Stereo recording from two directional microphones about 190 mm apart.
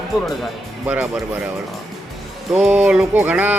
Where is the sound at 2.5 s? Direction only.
5° right (ahead or behind).